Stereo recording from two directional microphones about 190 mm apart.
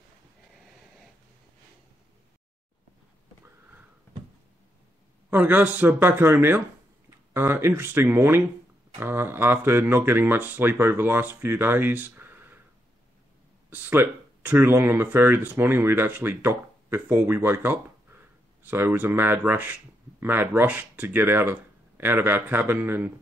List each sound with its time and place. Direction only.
5.3 s speech: 10° right (ahead or behind)
13.7 s speech: 10° right (ahead or behind)